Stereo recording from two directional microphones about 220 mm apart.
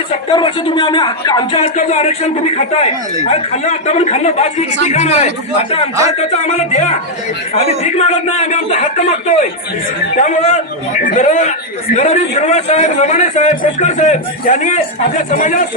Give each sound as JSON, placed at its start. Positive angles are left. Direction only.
{"t": 0.1, "sound": "a man's voice", "side_deg": 20}